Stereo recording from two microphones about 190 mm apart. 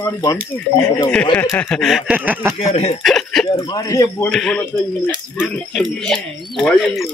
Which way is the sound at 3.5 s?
25° left (ahead or behind).